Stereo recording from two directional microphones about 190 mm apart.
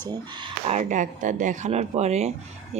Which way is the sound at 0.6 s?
40° right (ahead or behind).